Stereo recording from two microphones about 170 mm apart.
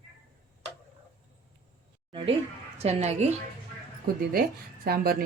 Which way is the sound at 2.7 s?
40° right (ahead or behind).